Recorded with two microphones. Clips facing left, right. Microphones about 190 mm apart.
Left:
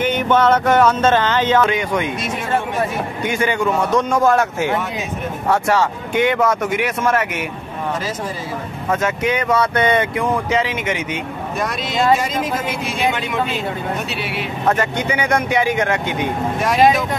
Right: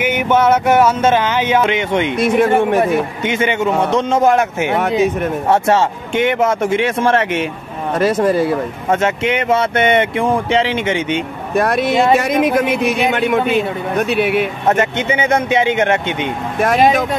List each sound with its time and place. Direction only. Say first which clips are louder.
0.0 s a sound: right 1 dB; 10° right (ahead or behind)
1.7 s speech: right 3 dB; 25° right (ahead or behind)
2.1 s a man's voice: right 9 dB; 55° right (ahead or behind)
2.8 s speech: right 6 dB; 25° right (ahead or behind)
8.0 s a man's voice: right 12 dB; 60° right (ahead or behind)
8.8 s speech: right 2 dB; 25° right (ahead or behind)
11.5 s a man's voice: right 8 dB; 60° right (ahead or behind)
14.7 s speech: right 2 dB; 20° right (ahead or behind)